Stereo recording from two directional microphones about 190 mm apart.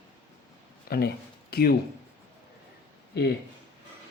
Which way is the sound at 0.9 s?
50° left (ahead or behind).